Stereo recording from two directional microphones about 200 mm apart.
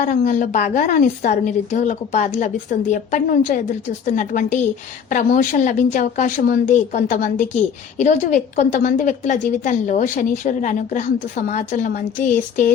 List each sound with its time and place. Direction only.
0.0 s a woman's voice: 40° left (ahead or behind)